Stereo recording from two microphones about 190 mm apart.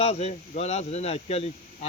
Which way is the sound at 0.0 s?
35° left (ahead or behind).